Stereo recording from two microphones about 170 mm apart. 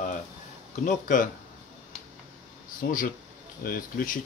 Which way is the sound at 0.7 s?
50° left (ahead or behind).